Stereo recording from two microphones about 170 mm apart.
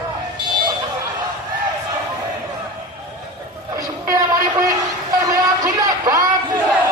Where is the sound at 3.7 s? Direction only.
20° right (ahead or behind).